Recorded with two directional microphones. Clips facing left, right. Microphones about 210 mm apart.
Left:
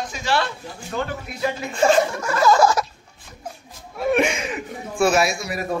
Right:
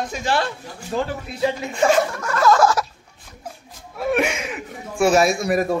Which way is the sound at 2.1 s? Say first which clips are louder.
Left 1 dB; 10° left (ahead or behind).